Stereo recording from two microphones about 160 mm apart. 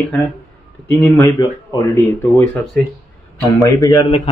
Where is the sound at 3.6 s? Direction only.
20° left (ahead or behind).